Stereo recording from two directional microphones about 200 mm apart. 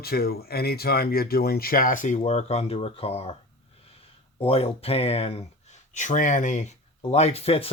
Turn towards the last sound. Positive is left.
turn(degrees=30)  # may be behind; listen again after turning